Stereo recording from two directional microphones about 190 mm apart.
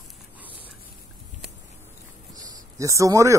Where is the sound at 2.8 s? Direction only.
15° right (ahead or behind).